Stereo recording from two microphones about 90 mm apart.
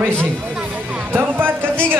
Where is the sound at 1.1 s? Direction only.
20° right (ahead or behind).